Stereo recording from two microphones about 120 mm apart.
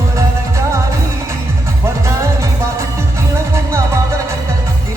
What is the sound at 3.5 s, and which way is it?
Music, 25° right (ahead or behind).